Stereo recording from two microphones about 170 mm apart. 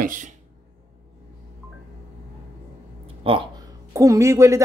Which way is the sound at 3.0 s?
30° right (ahead or behind).